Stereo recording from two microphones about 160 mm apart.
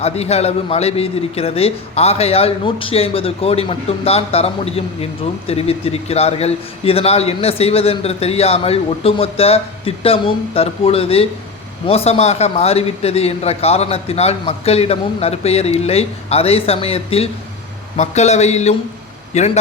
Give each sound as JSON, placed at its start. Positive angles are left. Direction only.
{"t": 0.0, "sound": "a man's voice", "side_deg": 40}
{"t": 17.9, "sound": "a sound", "side_deg": 45}
{"t": 19.3, "sound": "a man's voice", "side_deg": 45}